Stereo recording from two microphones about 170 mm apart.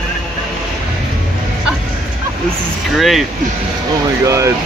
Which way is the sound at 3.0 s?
Centre (ahead or behind).